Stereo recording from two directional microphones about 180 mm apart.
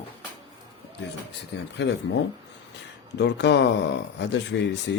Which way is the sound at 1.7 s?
75° left (ahead or behind).